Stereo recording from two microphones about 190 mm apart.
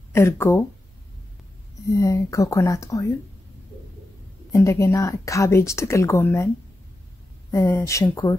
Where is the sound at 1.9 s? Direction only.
15° left (ahead or behind).